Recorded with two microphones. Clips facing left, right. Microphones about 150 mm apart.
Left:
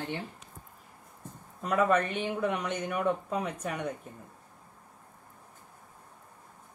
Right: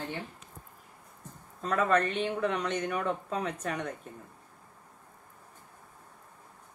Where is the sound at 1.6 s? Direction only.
10° left (ahead or behind).